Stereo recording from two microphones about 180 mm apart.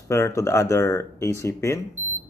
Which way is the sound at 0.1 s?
15° left (ahead or behind).